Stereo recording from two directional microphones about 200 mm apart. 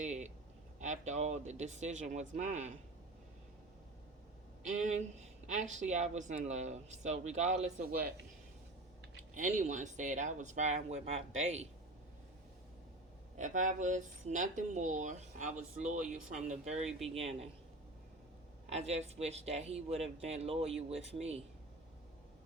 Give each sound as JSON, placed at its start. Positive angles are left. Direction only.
{"t": 0.0, "sound": "a sound", "side_deg": -35}
{"t": 0.8, "sound": "speech", "side_deg": -35}
{"t": 4.6, "sound": "speech", "side_deg": -35}
{"t": 9.3, "sound": "speech", "side_deg": -35}
{"t": 13.4, "sound": "speech", "side_deg": -40}
{"t": 18.7, "sound": "speech", "side_deg": -35}